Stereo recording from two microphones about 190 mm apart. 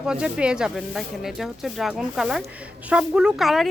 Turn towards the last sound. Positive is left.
turn(degrees=0)  # may be behind; listen again after turning